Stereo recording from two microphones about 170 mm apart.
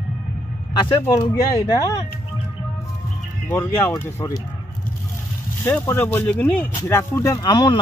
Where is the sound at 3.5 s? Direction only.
10° left (ahead or behind).